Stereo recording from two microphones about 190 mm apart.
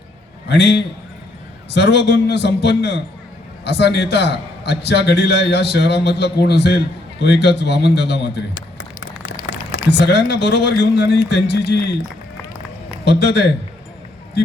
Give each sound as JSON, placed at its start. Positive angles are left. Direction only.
{"t": 0.4, "sound": "a man's voice", "side_deg": 60}
{"t": 9.7, "sound": "a man's voice", "side_deg": 60}
{"t": 13.1, "sound": "a man's voice", "side_deg": 60}